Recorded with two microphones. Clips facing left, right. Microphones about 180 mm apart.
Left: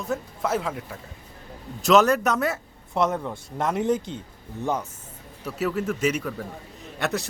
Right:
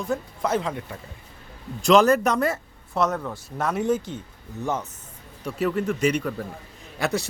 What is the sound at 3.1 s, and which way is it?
Speech, 15° left (ahead or behind).